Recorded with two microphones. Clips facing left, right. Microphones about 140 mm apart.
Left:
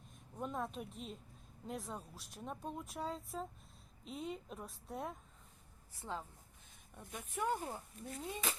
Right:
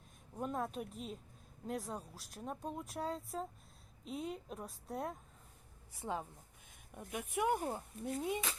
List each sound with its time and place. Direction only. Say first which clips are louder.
0.3 s speech: right 2 dB; 5° right (ahead or behind)
5.9 s speech: right 4 dB; 15° right (ahead or behind)